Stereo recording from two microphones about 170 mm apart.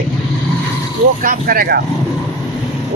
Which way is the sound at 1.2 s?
60° right (ahead or behind).